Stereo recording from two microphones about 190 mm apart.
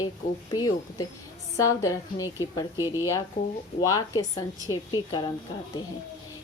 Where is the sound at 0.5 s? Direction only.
20° left (ahead or behind).